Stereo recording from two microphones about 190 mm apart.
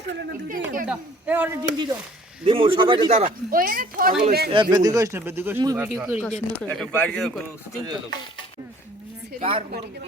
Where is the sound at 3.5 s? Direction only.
45° right (ahead or behind).